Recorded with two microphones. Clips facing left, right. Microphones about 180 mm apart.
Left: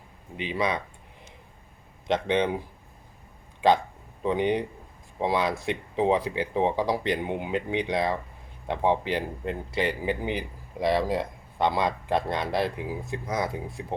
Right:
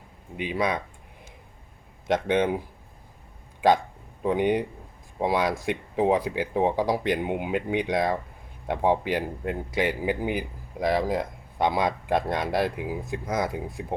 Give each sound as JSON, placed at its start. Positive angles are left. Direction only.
{"t": 0.3, "sound": "speech", "side_deg": -10}
{"t": 2.2, "sound": "speech", "side_deg": -5}
{"t": 4.2, "sound": "speech", "side_deg": -5}
{"t": 5.6, "sound": "speech", "side_deg": -10}